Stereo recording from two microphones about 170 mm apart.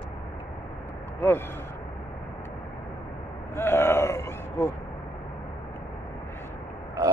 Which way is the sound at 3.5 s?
15° left (ahead or behind).